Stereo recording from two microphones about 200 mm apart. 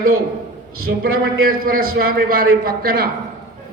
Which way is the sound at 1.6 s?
45° right (ahead or behind).